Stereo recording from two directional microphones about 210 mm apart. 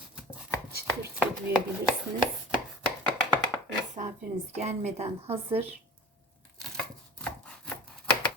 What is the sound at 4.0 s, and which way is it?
A woman's voice, 30° right (ahead or behind).